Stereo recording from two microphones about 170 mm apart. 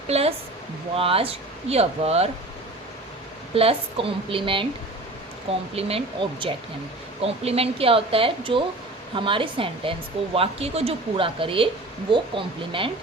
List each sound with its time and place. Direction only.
0.1 s a woman's voice: 35° right (ahead or behind)
3.5 s a woman's voice: 35° right (ahead or behind)
5.7 s a woman's voice: 30° right (ahead or behind)